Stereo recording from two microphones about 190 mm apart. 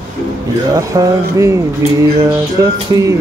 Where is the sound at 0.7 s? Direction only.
20° right (ahead or behind).